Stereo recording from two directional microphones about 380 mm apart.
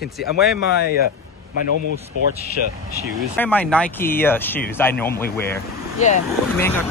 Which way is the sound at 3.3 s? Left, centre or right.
Centre.